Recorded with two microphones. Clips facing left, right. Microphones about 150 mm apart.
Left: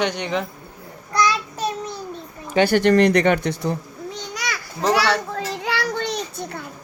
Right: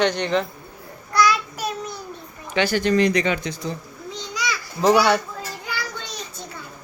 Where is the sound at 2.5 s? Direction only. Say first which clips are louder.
Left 4 dB; 50° left (ahead or behind).